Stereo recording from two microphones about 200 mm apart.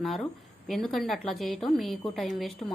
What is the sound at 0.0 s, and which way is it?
A woman's voice, centre (ahead or behind).